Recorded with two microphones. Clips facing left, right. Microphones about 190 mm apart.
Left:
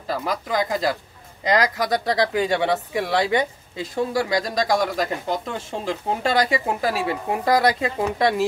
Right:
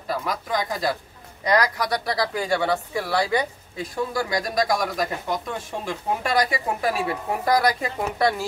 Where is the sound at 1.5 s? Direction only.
20° left (ahead or behind).